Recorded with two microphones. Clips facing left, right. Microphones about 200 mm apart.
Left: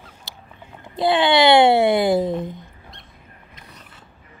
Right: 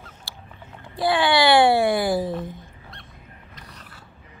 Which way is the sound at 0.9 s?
20° left (ahead or behind).